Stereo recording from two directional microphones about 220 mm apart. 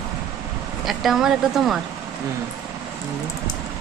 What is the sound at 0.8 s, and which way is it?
Speech, centre (ahead or behind).